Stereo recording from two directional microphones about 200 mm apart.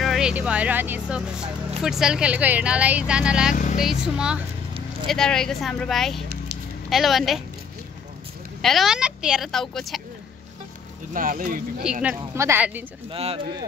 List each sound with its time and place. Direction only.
0.0 s speech: centre (ahead or behind)
3.5 s speech: 40° left (ahead or behind)
3.8 s speech: 5° right (ahead or behind)
8.6 s speech: centre (ahead or behind)
11.1 s speech: 45° right (ahead or behind)
11.8 s speech: 5° right (ahead or behind)
13.1 s speech: 30° right (ahead or behind)